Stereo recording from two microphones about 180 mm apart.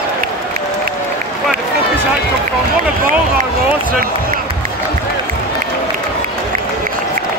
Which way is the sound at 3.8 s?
50° right (ahead or behind).